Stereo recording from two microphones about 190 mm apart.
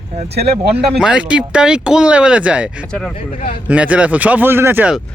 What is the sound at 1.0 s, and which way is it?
Speech, 5° right (ahead or behind).